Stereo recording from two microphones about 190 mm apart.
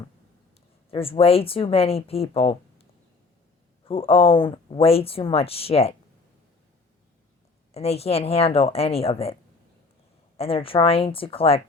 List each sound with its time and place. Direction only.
0.9 s speech: 30° left (ahead or behind)
3.8 s speech: 30° left (ahead or behind)
7.7 s speech: 35° left (ahead or behind)
10.3 s speech: 30° left (ahead or behind)